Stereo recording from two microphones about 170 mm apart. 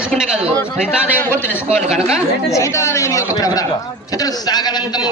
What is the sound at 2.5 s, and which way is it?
A man's voice, 15° left (ahead or behind).